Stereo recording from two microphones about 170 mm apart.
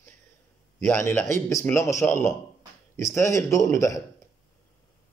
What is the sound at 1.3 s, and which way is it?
A man's voice, 15° left (ahead or behind).